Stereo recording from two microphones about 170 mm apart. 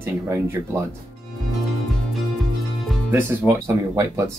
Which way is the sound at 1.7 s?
Centre (ahead or behind).